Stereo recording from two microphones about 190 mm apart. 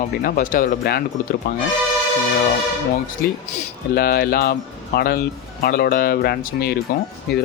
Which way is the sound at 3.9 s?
55° left (ahead or behind).